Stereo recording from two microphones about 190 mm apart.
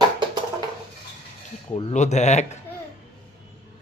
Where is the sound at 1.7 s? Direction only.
30° left (ahead or behind).